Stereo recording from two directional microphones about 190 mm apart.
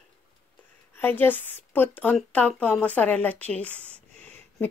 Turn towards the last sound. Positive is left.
turn(degrees=10)  # may be behind; listen again after turning